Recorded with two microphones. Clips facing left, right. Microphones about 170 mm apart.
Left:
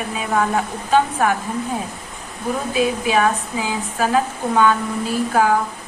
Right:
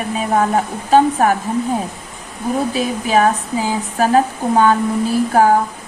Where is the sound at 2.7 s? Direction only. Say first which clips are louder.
Left 1 dB; 40° right (ahead or behind).